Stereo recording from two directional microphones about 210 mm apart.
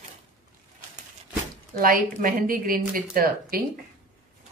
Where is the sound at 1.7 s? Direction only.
40° right (ahead or behind).